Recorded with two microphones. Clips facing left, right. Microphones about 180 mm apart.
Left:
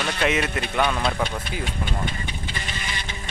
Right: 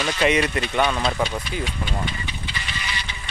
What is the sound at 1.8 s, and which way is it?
Vehicle, 50° left (ahead or behind).